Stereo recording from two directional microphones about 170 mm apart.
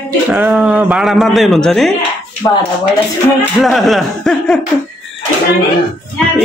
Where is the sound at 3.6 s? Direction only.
Centre (ahead or behind).